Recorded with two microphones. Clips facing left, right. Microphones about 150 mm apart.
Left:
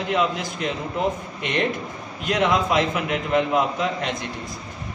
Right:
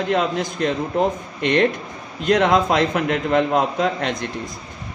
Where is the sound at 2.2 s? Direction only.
50° right (ahead or behind).